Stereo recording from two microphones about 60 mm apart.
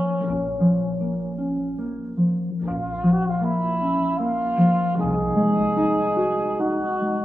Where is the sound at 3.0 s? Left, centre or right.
Right.